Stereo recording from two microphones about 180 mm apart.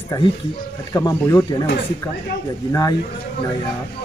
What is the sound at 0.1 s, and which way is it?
Speech, 20° left (ahead or behind).